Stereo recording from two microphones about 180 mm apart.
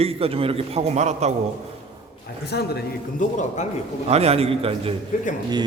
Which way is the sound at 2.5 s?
65° left (ahead or behind).